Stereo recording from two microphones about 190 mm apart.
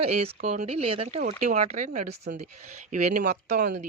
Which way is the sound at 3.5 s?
60° right (ahead or behind).